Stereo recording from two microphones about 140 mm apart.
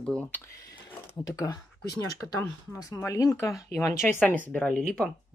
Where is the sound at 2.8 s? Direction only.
25° left (ahead or behind); by 5.1 s 5° left (ahead or behind).